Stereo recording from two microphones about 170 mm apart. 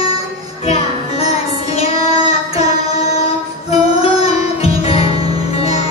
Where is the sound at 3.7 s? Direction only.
35° left (ahead or behind).